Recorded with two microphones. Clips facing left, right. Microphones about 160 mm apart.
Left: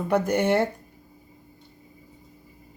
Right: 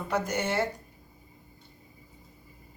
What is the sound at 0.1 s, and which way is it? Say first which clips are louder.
Speech: left 8 dB; 55° left (ahead or behind).